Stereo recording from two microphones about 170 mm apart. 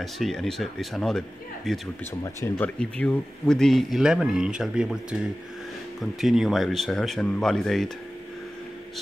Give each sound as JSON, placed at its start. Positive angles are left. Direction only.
{"t": 0.0, "sound": "speech", "side_deg": 0}
{"t": 6.2, "sound": "speech", "side_deg": 0}